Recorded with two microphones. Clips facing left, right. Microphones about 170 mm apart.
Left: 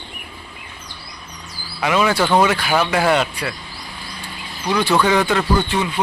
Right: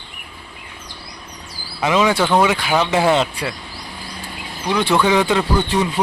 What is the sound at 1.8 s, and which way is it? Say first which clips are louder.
Speech: right 1 dB; 20° right (ahead or behind).